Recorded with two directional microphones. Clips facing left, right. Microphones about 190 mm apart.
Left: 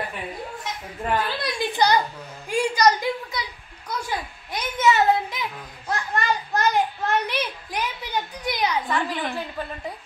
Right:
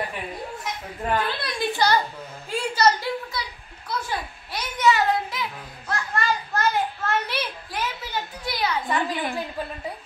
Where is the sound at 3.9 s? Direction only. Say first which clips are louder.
Even; 15° left (ahead or behind).